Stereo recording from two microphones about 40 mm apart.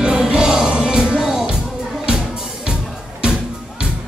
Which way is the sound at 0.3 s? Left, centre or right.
Centre.